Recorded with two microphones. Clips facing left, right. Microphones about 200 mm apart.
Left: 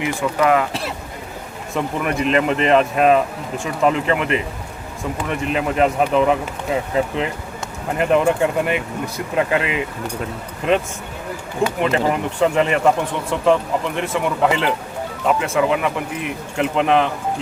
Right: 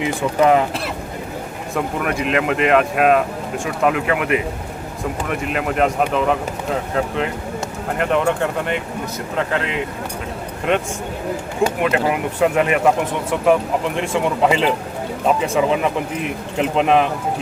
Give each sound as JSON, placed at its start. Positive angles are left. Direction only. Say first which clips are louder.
{"t": 0.0, "sound": "speech", "louder": "right 2 dB", "side_deg": -25}
{"t": 1.7, "sound": "speech", "louder": "even", "side_deg": 0}
{"t": 5.5, "sound": "speech", "louder": "left 1 dB", "side_deg": 0}
{"t": 11.8, "sound": "speech", "louder": "even", "side_deg": -5}